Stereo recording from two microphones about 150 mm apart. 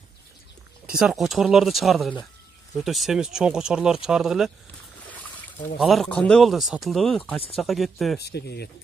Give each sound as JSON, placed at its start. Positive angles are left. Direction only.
{"t": 0.8, "sound": "speech", "side_deg": -5}
{"t": 5.8, "sound": "speech", "side_deg": 0}
{"t": 7.5, "sound": "speech", "side_deg": 0}
{"t": 8.2, "sound": "speech", "side_deg": 90}